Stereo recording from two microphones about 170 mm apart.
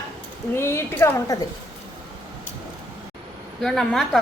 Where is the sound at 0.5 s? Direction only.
15° left (ahead or behind).